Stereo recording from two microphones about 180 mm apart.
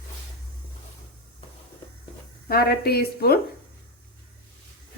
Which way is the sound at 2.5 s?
60° left (ahead or behind).